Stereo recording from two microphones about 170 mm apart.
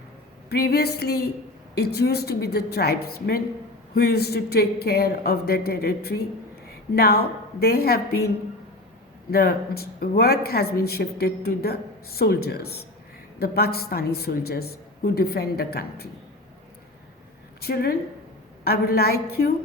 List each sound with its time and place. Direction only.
0.5 s a woman's voice: 65° left (ahead or behind)
9.3 s a woman's voice: 65° left (ahead or behind)
17.6 s a woman's voice: 65° left (ahead or behind)